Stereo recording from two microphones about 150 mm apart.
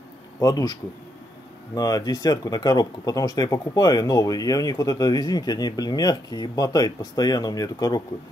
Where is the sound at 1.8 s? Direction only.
25° left (ahead or behind).